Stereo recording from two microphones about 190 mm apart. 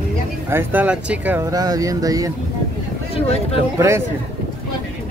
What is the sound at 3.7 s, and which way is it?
Speech, 15° right (ahead or behind).